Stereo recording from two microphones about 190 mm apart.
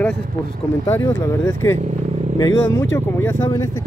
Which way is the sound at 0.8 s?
15° left (ahead or behind).